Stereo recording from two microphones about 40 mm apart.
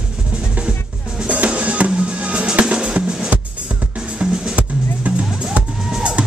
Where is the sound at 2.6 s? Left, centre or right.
Right.